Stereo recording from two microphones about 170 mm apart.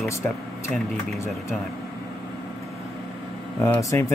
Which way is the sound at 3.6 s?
15° left (ahead or behind).